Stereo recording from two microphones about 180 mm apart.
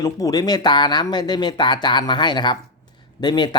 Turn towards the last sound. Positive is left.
turn(degrees=25)  # may be behind; listen again after turning